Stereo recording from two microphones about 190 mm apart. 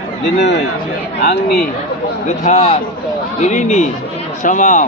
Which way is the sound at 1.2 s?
60° left (ahead or behind).